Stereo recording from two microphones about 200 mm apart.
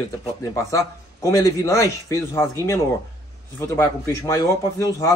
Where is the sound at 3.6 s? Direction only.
15° left (ahead or behind).